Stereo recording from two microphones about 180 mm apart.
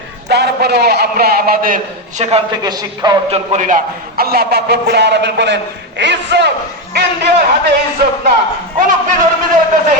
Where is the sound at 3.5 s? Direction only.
45° right (ahead or behind); by 6.5 s 75° right (ahead or behind).